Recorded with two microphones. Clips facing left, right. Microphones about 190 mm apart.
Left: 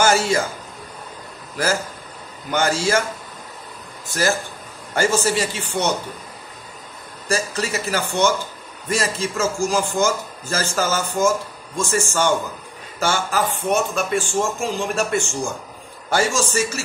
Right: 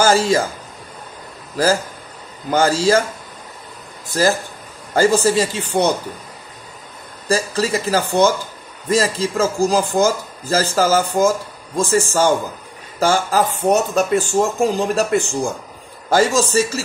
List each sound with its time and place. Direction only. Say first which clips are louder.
0.0 s a man's voice: right 3 dB; 35° right (ahead or behind)
2.5 s a man's voice: right 5 dB; 35° right (ahead or behind)
4.1 s a man's voice: right 4 dB; 35° right (ahead or behind)
7.2 s a man's voice: right 5 dB; 35° right (ahead or behind)
16.1 s a man's voice: right 5 dB; 35° right (ahead or behind)